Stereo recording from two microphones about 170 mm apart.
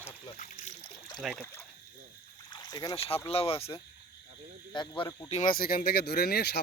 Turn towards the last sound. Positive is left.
turn(degrees=70)  # may be behind; listen again after turning